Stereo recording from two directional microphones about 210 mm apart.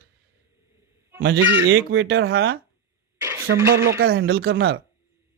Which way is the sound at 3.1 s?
10° right (ahead or behind).